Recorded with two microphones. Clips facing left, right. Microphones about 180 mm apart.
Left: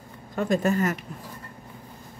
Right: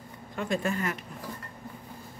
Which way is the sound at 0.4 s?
40° left (ahead or behind).